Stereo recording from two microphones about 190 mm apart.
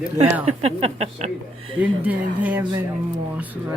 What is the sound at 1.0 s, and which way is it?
Speech, 35° right (ahead or behind).